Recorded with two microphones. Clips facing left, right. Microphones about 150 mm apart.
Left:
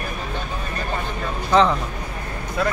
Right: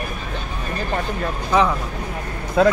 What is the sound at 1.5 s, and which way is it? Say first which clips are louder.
Speech: left 2 dB; 10° right (ahead or behind).